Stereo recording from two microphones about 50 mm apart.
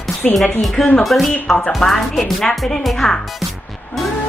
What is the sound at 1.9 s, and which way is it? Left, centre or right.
Speech, centre.